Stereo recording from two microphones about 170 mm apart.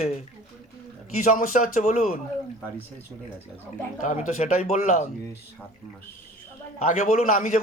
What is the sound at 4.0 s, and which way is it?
A man's voice, 45° left (ahead or behind).